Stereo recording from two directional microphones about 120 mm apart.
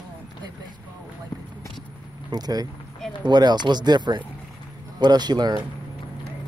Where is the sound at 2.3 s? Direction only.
35° right (ahead or behind).